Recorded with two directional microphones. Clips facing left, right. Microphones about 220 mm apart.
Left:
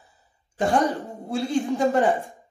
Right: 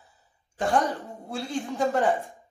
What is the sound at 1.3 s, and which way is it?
Speech, 15° left (ahead or behind).